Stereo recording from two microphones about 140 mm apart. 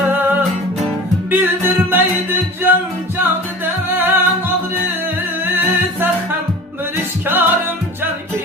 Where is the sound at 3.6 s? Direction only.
15° right (ahead or behind).